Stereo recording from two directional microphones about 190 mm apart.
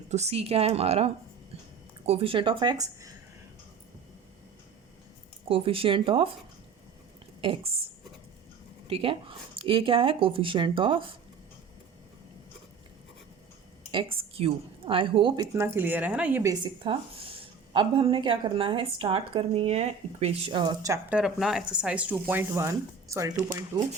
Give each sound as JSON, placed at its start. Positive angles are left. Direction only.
{"t": 0.1, "sound": "a woman's voice", "side_deg": -35}
{"t": 5.5, "sound": "speech", "side_deg": -30}
{"t": 7.4, "sound": "speech", "side_deg": -25}
{"t": 8.9, "sound": "speech", "side_deg": -30}
{"t": 13.9, "sound": "speech", "side_deg": -30}
{"t": 15.5, "sound": "speech", "side_deg": -15}
{"t": 21.1, "sound": "speech", "side_deg": -5}